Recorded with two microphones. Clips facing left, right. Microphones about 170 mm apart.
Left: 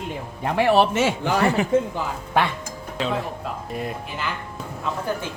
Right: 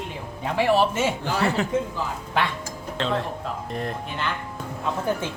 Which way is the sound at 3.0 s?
5° left (ahead or behind).